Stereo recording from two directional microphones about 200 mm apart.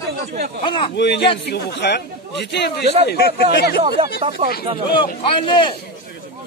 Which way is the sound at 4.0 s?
30° right (ahead or behind).